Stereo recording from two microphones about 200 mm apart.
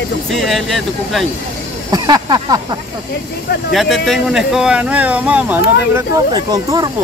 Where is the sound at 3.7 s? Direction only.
Centre (ahead or behind); by 6.9 s 20° right (ahead or behind).